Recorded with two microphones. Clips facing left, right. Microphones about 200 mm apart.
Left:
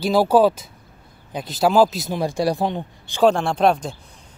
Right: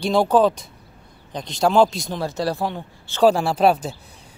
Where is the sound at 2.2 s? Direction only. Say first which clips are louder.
Left 3 dB; 15° left (ahead or behind).